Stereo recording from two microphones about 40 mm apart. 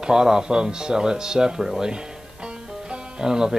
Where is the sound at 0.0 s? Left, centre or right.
Centre.